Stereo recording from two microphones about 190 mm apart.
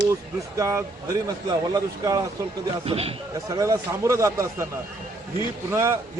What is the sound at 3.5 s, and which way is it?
Speech, 15° right (ahead or behind).